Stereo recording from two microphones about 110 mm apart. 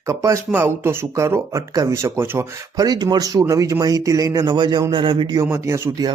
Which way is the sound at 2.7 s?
35° right (ahead or behind).